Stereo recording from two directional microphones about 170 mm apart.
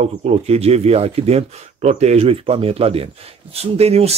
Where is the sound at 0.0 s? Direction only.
35° right (ahead or behind).